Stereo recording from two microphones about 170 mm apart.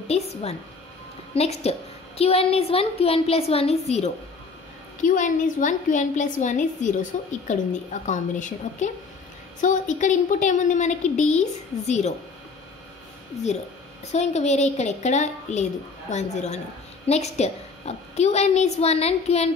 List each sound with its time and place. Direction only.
0.1 s a woman's voice: 35° left (ahead or behind)
5.0 s a woman's voice: 50° left (ahead or behind)
14.1 s a woman's voice: 40° left (ahead or behind)